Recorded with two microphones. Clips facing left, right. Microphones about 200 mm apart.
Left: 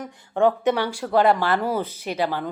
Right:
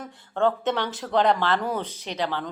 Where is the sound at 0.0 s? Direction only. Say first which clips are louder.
Left 4 dB; 15° left (ahead or behind).